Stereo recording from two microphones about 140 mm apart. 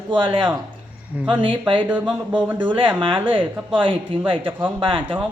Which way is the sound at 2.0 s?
35° right (ahead or behind).